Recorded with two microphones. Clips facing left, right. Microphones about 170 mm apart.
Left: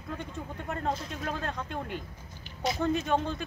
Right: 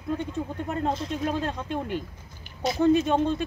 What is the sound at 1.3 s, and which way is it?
Speech, 25° right (ahead or behind).